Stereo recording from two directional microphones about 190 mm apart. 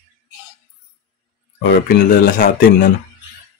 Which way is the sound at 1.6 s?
55° left (ahead or behind).